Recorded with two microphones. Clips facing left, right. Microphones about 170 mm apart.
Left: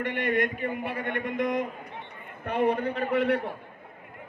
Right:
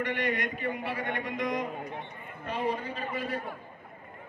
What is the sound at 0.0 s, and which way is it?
A man's voice, 55° left (ahead or behind).